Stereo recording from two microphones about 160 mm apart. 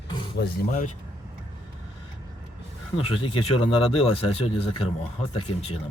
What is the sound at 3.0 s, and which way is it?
Speech, 35° left (ahead or behind).